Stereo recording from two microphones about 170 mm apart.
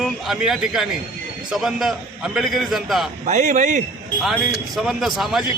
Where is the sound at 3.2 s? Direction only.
45° right (ahead or behind).